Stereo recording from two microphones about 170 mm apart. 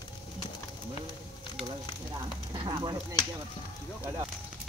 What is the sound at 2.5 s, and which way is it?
Speech, 25° right (ahead or behind).